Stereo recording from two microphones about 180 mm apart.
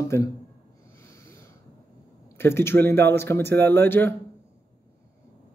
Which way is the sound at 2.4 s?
15° left (ahead or behind).